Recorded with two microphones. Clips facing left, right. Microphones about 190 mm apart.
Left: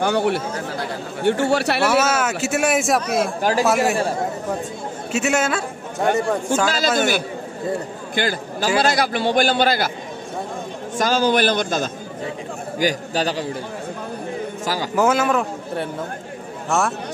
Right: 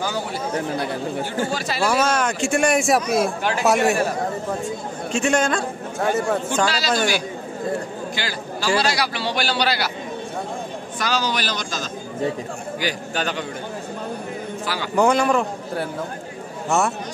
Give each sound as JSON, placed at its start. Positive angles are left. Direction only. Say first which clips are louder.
{"t": 0.0, "sound": "a man's voice", "louder": "left 6 dB", "side_deg": 65}
{"t": 1.9, "sound": "speech", "louder": "right 2 dB", "side_deg": 5}
{"t": 5.1, "sound": "a man's voice", "louder": "even", "side_deg": 5}
{"t": 6.7, "sound": "a man's voice", "louder": "left 2 dB", "side_deg": 50}
{"t": 8.2, "sound": "a man's voice", "louder": "left 10 dB", "side_deg": 50}
{"t": 11.0, "sound": "a man's voice", "louder": "left 7 dB", "side_deg": 50}
{"t": 12.7, "sound": "a man's voice", "louder": "left 5 dB", "side_deg": 40}
{"t": 15.0, "sound": "a man's voice", "louder": "right 1 dB", "side_deg": 5}